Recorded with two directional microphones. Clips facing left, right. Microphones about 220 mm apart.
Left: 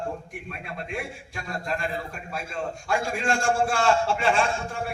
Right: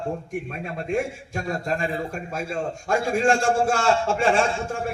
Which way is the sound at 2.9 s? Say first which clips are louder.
Right 6 dB; 45° right (ahead or behind).